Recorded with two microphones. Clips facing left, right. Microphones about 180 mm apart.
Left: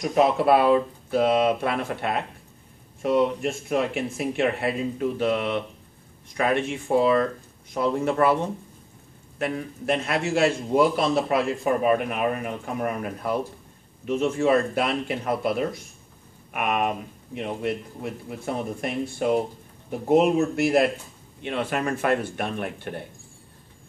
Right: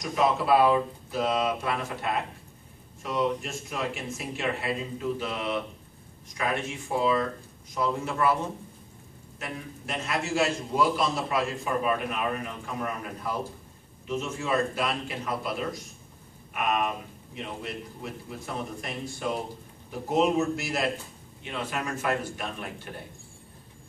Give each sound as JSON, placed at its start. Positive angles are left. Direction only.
{"t": 0.0, "sound": "a man's voice", "side_deg": 55}
{"t": 9.4, "sound": "a man's voice", "side_deg": 60}
{"t": 16.5, "sound": "a man's voice", "side_deg": 60}